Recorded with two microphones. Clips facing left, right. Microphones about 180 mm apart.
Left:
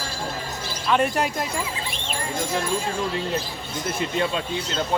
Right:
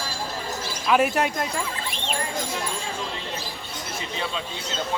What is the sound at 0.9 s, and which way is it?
Speech, 5° right (ahead or behind).